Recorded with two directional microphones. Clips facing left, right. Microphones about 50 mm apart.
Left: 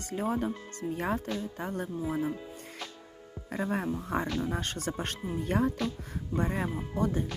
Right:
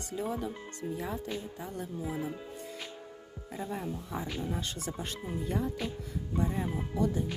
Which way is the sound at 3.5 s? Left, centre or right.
Left.